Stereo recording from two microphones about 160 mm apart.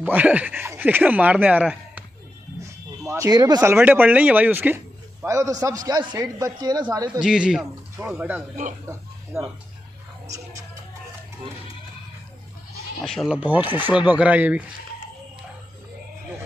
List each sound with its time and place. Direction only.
0.0 s speech: 10° right (ahead or behind)
3.1 s speech: 20° right (ahead or behind)
7.2 s a man's voice: 5° right (ahead or behind)
13.0 s speech: centre (ahead or behind)